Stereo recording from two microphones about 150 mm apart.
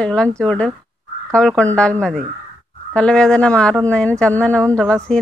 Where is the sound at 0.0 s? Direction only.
5° left (ahead or behind).